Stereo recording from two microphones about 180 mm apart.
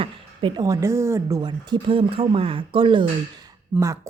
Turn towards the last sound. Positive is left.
turn(degrees=-15)  # may be behind; listen again after turning